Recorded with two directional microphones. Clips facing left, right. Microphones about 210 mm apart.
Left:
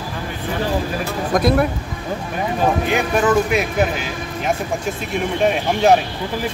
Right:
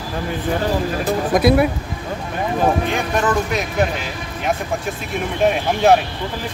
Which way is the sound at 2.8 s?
5° left (ahead or behind).